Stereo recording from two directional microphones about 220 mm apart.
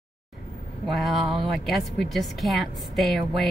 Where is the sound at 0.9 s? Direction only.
Centre (ahead or behind).